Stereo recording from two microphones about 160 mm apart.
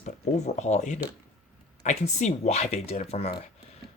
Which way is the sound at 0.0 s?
45° left (ahead or behind).